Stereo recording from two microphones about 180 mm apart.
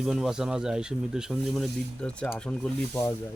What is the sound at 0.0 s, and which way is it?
Speech, 5° right (ahead or behind).